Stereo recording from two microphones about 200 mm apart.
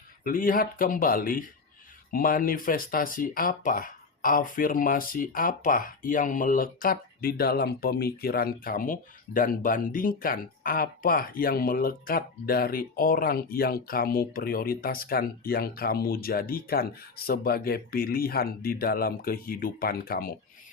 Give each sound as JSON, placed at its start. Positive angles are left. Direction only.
{"t": 0.3, "sound": "speech", "side_deg": 45}